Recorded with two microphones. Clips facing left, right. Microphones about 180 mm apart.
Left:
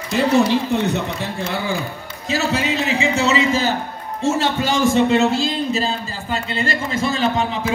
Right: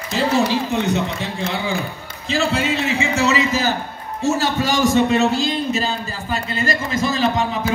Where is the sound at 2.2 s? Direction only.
45° left (ahead or behind).